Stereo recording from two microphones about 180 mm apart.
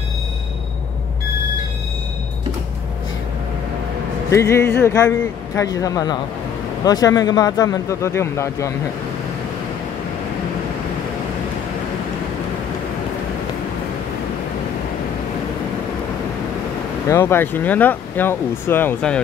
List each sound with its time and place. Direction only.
4.3 s speech: 15° left (ahead or behind)
17.1 s speech: 15° left (ahead or behind)